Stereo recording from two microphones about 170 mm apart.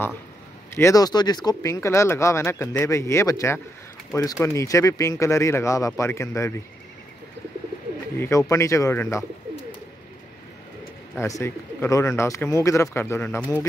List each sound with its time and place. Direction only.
0.7 s speech: 20° left (ahead or behind)
8.2 s speech: 20° left (ahead or behind)
11.1 s speech: 15° left (ahead or behind)